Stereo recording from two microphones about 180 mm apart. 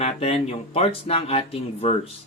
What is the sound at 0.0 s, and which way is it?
Speech, 35° left (ahead or behind).